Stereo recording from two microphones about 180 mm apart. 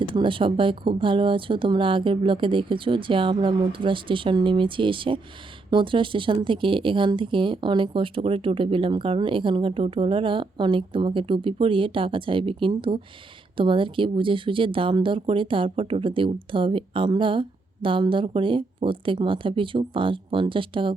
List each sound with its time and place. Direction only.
0.1 s speech: 30° right (ahead or behind)